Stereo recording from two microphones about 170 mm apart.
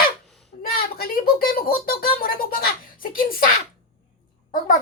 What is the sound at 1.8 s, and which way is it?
Music, 60° left (ahead or behind).